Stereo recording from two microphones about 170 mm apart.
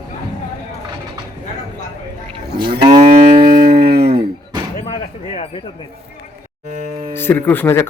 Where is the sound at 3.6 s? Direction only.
65° right (ahead or behind).